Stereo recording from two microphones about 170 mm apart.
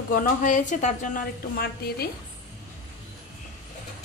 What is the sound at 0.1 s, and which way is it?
A woman's voice, 50° left (ahead or behind).